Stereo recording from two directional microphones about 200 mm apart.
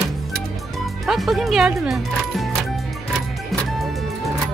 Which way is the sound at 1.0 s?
Centre (ahead or behind).